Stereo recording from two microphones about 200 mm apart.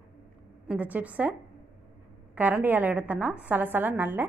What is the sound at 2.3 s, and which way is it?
A woman's voice, 10° right (ahead or behind).